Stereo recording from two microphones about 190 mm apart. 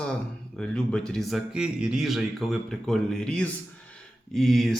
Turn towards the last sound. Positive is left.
turn(degrees=0)  # may be behind; listen again after turning